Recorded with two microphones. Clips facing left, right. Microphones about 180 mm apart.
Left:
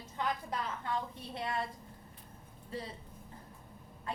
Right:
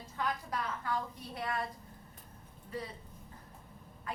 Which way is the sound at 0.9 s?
25° left (ahead or behind).